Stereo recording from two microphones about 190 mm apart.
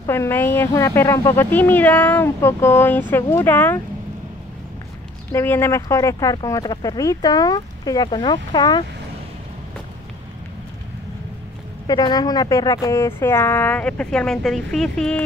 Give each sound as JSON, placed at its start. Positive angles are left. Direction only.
{"t": 0.0, "sound": "speech", "side_deg": 15}
{"t": 5.3, "sound": "speech", "side_deg": 10}
{"t": 11.9, "sound": "speech", "side_deg": 20}